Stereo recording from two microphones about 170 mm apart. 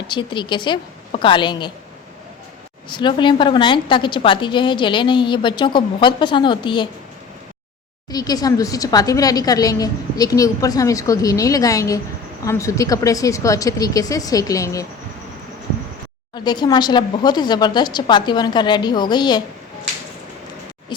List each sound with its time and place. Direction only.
0.1 s a woman's voice: 30° left (ahead or behind)
2.9 s a woman's voice: 25° left (ahead or behind)
8.1 s a woman's voice: 20° left (ahead or behind)
16.3 s a woman's voice: 25° left (ahead or behind)